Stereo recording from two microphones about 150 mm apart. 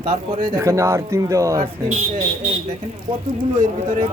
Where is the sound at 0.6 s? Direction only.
20° right (ahead or behind).